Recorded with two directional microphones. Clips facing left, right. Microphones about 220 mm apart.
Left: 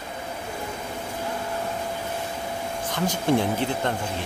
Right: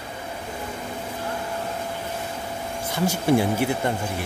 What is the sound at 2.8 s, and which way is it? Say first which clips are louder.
Speech: right 2 dB; 10° right (ahead or behind).